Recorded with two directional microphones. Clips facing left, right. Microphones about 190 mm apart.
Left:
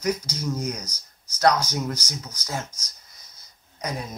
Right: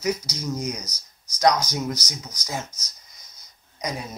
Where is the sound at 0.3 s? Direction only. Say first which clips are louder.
Even; 10° right (ahead or behind).